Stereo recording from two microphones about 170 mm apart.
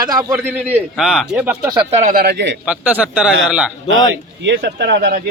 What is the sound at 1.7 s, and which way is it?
Speech, 30° right (ahead or behind).